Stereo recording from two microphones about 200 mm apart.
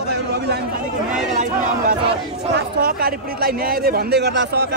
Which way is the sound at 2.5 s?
50° right (ahead or behind).